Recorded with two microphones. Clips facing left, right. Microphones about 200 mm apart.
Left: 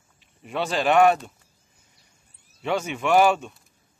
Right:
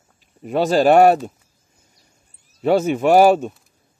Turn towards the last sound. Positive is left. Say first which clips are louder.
# right 6 dB
turn(degrees=-40)  # may be behind; listen again after turning